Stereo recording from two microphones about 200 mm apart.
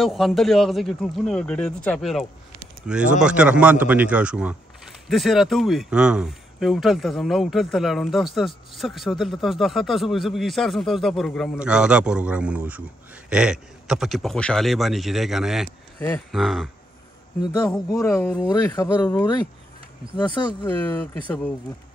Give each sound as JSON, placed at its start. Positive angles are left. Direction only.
{"t": 0.0, "sound": "speech", "side_deg": 0}
{"t": 18.5, "sound": "speech", "side_deg": 20}
{"t": 20.2, "sound": "speech", "side_deg": 20}
{"t": 20.6, "sound": "speech", "side_deg": 10}